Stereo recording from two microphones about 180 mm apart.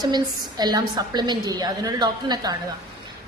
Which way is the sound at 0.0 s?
25° right (ahead or behind).